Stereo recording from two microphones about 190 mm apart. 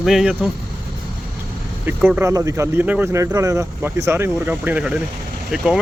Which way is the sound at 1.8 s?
10° right (ahead or behind).